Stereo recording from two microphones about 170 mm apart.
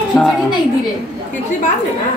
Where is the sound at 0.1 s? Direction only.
20° left (ahead or behind).